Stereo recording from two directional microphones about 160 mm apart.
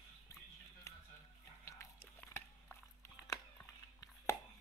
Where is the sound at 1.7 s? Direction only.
15° left (ahead or behind).